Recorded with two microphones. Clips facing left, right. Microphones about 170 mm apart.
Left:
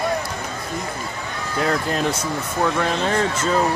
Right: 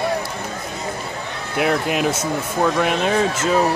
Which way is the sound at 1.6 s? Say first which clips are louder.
Right 2 dB; 10° right (ahead or behind).